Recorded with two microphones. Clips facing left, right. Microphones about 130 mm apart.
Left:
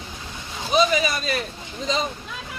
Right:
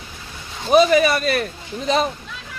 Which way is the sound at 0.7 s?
55° right (ahead or behind).